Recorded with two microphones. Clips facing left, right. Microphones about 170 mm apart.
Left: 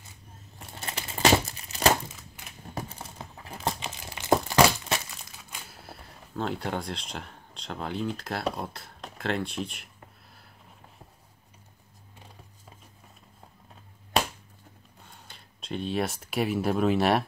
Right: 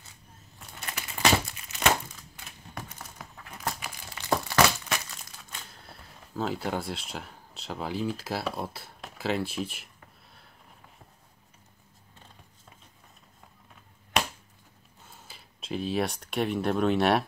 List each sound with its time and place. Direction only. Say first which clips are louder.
0.6 s crumpling: left 2 dB; 30° left (ahead or behind)
5.1 s speech: even; 5° left (ahead or behind)
15.0 s speech: right 2 dB; 5° right (ahead or behind)